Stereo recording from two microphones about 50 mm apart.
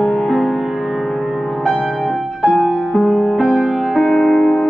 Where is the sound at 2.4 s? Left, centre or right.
Centre.